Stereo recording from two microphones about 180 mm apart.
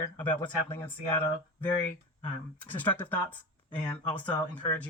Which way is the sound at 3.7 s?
25° left (ahead or behind).